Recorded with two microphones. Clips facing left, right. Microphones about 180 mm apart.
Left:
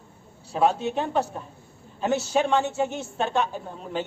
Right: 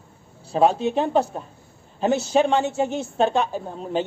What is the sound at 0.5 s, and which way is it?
Speech, 25° right (ahead or behind).